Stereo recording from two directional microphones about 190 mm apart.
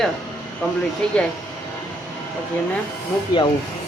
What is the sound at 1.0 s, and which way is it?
Speech, 5° left (ahead or behind).